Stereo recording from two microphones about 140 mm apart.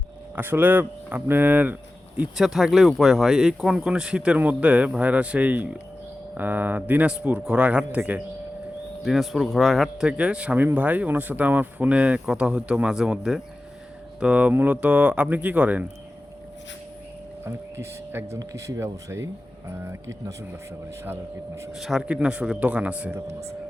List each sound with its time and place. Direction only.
0.3 s a man's voice: 15° right (ahead or behind)
9.0 s a man's voice: centre (ahead or behind)
17.4 s speech: 15° right (ahead or behind)
21.7 s a man's voice: centre (ahead or behind); by 23.6 s 20° right (ahead or behind)